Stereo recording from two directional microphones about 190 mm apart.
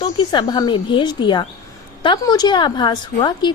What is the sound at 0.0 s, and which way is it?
A woman's voice, 25° left (ahead or behind).